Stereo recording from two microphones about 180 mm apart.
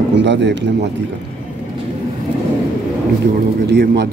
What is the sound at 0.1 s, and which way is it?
Speech, 80° right.